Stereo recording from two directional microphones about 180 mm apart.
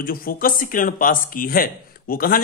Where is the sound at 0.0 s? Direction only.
55° left (ahead or behind).